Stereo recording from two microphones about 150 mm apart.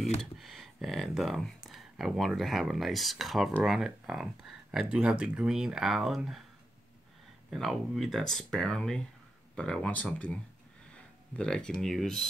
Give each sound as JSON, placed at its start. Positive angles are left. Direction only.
{"t": 0.2, "sound": "speech", "side_deg": 0}
{"t": 7.5, "sound": "speech", "side_deg": 0}